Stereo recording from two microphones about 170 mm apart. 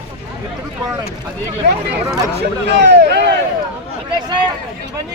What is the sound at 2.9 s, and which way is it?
Speech, 85° right.